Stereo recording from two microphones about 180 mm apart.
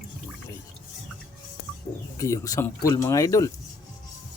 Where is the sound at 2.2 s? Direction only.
20° left (ahead or behind).